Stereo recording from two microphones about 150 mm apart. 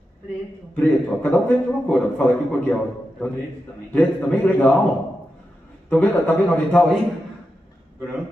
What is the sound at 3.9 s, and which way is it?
Speech, 10° left (ahead or behind).